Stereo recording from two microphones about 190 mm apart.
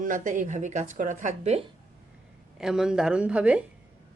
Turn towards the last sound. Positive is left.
turn(degrees=-5)  # may be behind; listen again after turning